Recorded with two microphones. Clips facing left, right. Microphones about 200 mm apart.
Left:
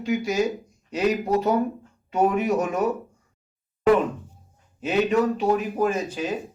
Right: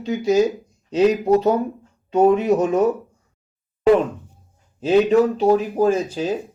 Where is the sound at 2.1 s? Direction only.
25° right (ahead or behind).